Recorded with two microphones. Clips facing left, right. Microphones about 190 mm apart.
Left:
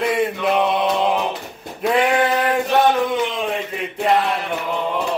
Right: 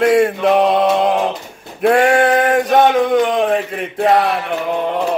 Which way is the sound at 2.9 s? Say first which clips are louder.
Right 6 dB; 60° right (ahead or behind).